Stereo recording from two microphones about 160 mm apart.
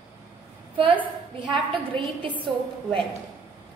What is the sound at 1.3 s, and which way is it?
A woman's voice, 30° right (ahead or behind).